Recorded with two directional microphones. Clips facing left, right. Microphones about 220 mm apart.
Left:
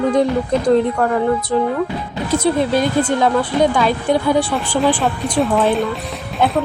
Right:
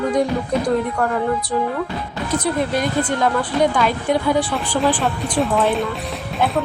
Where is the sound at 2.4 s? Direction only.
30° left (ahead or behind).